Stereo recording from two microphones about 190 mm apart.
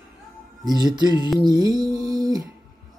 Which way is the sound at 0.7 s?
20° right (ahead or behind).